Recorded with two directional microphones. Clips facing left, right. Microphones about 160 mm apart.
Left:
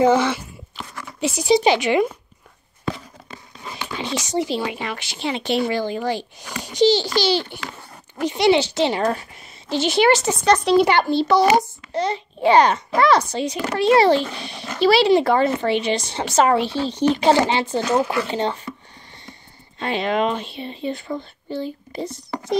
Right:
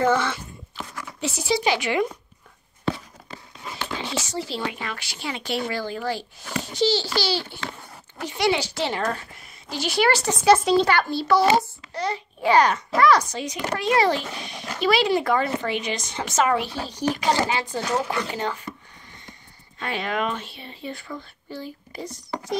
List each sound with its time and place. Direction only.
0.0 s speech: 20° left (ahead or behind)
3.7 s a child's voice: 15° left (ahead or behind)
10.4 s speech: 5° right (ahead or behind)
10.8 s a child's voice: 20° left (ahead or behind)
19.8 s a child's voice: 25° left (ahead or behind)